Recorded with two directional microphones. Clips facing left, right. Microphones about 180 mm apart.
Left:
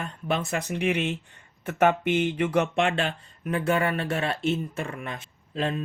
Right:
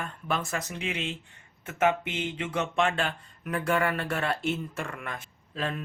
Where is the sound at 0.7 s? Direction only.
65° left (ahead or behind).